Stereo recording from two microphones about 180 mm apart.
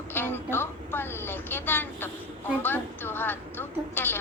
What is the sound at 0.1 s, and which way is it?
A woman's voice, 10° left (ahead or behind).